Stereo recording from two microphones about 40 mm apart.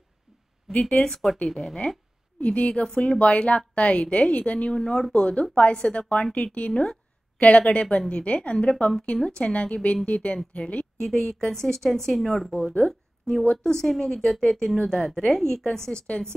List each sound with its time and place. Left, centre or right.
0.7 s speech: centre
1.8 s a woman's voice: left
6.7 s a woman's voice: left
7.3 s a woman's voice: left
11.0 s a woman's voice: centre
12.7 s speech: centre
16.1 s a woman's voice: left